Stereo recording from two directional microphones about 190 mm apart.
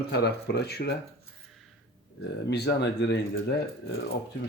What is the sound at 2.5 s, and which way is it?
Speech, 60° left (ahead or behind).